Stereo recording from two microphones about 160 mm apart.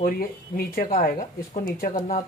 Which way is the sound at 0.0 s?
70° left (ahead or behind).